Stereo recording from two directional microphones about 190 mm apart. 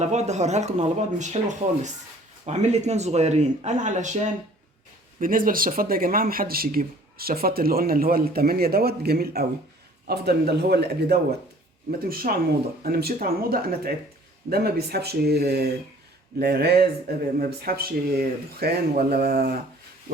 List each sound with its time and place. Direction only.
0.0 s speech: 35° right (ahead or behind)
5.2 s speech: 45° right (ahead or behind)